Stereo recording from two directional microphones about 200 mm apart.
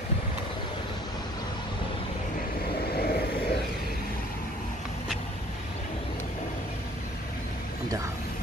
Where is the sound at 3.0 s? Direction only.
50° left (ahead or behind).